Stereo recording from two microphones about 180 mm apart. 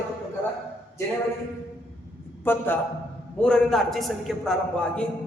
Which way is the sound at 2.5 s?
10° left (ahead or behind).